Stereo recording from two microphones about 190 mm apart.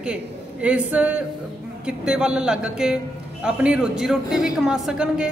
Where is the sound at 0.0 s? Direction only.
5° right (ahead or behind).